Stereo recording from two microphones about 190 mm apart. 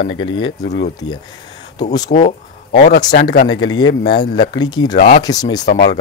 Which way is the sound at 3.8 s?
60° left (ahead or behind).